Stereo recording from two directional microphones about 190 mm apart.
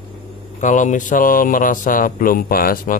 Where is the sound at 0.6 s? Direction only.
40° left (ahead or behind).